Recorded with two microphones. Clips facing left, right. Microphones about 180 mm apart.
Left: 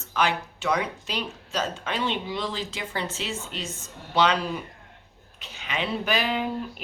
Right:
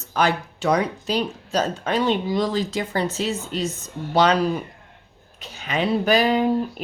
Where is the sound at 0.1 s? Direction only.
40° right (ahead or behind).